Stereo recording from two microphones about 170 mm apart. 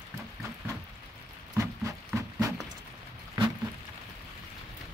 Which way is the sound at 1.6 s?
20° right (ahead or behind).